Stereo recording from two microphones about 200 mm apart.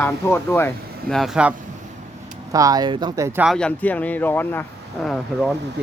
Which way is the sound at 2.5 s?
20° right (ahead or behind).